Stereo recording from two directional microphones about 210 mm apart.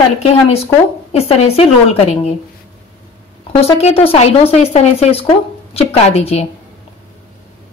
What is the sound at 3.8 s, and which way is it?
Speech, 25° left (ahead or behind).